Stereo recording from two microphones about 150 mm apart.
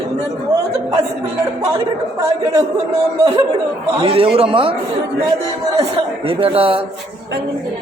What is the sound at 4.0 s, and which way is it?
Speech, 35° right (ahead or behind).